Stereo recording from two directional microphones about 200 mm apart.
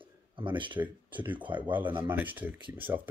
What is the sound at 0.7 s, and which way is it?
Speech, 10° right (ahead or behind).